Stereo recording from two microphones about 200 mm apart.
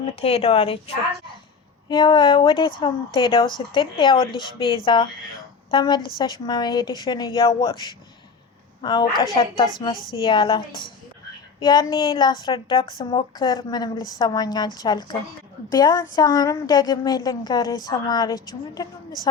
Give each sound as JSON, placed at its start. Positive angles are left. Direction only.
{"t": 0.2, "sound": "a woman's voice", "side_deg": 30}
{"t": 11.6, "sound": "a woman's voice", "side_deg": 20}